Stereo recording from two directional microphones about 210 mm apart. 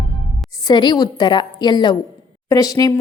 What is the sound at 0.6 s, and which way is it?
A woman's voice, 20° left (ahead or behind).